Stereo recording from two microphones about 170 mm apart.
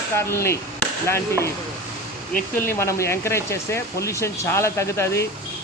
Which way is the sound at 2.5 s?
15° left (ahead or behind).